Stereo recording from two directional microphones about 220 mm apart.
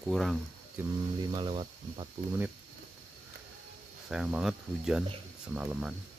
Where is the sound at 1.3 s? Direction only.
25° right (ahead or behind).